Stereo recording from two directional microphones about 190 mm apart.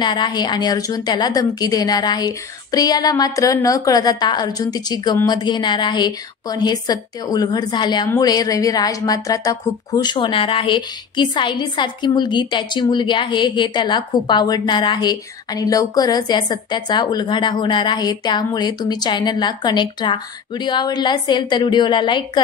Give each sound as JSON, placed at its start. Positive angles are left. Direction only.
{"t": 0.0, "sound": "a woman's voice", "side_deg": 25}